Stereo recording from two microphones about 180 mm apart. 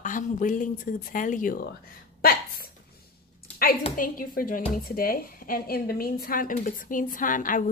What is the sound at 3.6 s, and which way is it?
A woman's voice, 55° left (ahead or behind).